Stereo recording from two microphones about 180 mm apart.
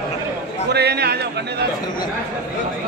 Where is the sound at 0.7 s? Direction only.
65° right (ahead or behind).